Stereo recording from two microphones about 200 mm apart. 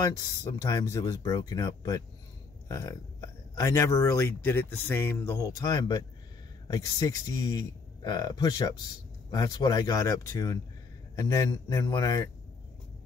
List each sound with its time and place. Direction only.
0.0 s speech: 15° left (ahead or behind)